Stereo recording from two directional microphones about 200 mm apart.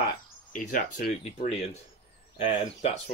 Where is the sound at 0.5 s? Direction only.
40° left (ahead or behind).